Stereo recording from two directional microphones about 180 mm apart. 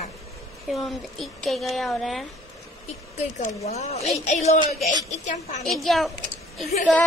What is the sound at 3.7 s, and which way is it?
A woman's voice, 35° left (ahead or behind).